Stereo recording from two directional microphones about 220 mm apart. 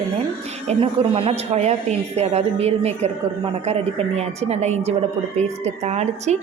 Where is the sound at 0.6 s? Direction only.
25° right (ahead or behind).